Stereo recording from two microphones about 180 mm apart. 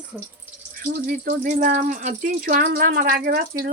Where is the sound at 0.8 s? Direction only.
55° right (ahead or behind).